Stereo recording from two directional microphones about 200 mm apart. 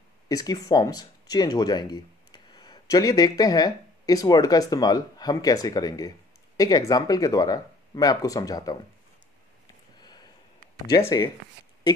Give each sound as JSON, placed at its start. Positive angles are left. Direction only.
{"t": 0.3, "sound": "speech", "side_deg": 20}
{"t": 9.9, "sound": "sniff", "side_deg": 20}
{"t": 11.0, "sound": "speech", "side_deg": 15}